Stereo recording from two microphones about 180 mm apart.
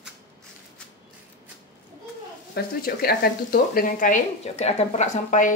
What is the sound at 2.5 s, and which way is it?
A woman's voice, 60° left (ahead or behind).